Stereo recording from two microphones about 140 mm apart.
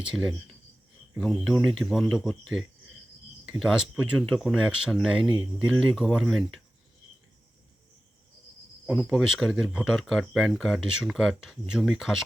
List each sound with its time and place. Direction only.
0.0 s speech: 5° right (ahead or behind)
3.4 s speech: 5° right (ahead or behind)
5.2 s speech: 35° right (ahead or behind)
5.6 s speech: 5° right (ahead or behind)
8.9 s speech: centre (ahead or behind)